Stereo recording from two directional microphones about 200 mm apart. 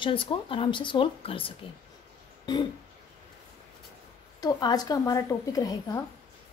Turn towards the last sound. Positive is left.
turn(degrees=15)  # may be behind; listen again after turning